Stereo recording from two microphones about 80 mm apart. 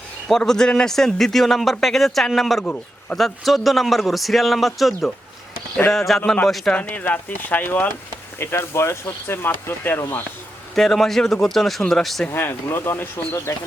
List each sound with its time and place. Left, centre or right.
0.3 s a man's voice: centre
6.7 s speech: left
10.8 s a man's voice: centre
12.3 s speech: left